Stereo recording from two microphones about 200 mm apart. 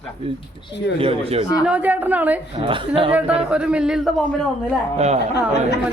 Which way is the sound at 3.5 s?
5° right (ahead or behind).